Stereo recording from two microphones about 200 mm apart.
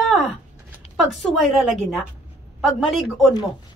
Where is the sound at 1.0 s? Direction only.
Centre (ahead or behind).